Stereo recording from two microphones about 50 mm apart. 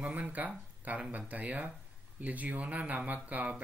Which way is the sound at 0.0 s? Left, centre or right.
Right.